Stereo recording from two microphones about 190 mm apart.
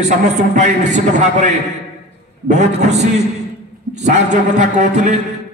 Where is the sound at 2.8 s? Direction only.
35° right (ahead or behind).